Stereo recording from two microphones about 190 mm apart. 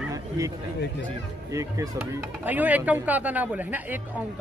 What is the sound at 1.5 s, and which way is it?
Speech, 15° right (ahead or behind).